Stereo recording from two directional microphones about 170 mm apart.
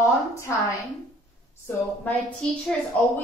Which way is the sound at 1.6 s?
10° left (ahead or behind).